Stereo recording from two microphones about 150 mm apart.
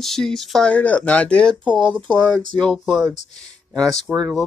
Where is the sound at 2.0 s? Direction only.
5° left (ahead or behind).